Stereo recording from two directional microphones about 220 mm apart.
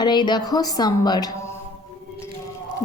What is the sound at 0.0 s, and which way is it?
A woman's voice, 20° left (ahead or behind).